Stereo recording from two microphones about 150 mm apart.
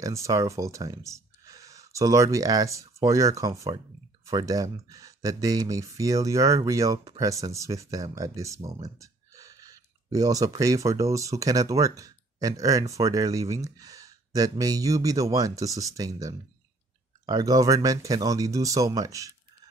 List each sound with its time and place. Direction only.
0.0 s speech: 20° right (ahead or behind)